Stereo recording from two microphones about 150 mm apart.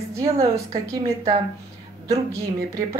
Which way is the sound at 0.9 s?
25° right (ahead or behind).